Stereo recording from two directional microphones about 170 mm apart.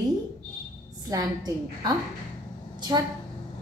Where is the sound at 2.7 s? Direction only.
25° right (ahead or behind).